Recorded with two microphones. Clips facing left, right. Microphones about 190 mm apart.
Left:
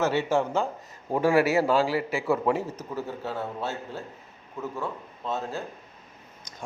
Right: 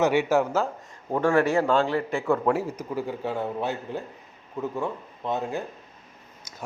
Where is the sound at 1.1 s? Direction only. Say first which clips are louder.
Even; 10° left (ahead or behind).